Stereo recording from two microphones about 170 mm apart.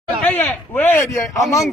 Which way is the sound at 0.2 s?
10° left (ahead or behind).